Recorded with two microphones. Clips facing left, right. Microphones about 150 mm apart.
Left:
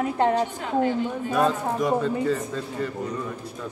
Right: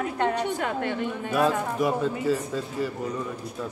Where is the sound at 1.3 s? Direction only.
5° right (ahead or behind).